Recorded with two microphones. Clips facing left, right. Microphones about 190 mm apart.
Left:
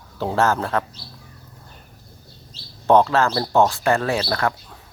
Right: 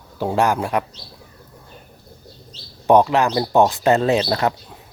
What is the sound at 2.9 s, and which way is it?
Speech, 15° right (ahead or behind).